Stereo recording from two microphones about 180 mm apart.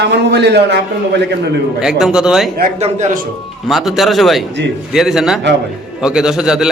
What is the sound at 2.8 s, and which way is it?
Speech, 35° right (ahead or behind).